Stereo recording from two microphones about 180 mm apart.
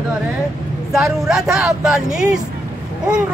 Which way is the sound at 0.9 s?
Centre (ahead or behind).